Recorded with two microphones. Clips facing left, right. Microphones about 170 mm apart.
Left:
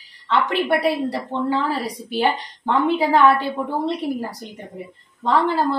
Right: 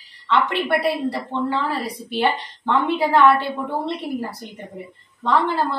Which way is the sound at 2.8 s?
40° left (ahead or behind).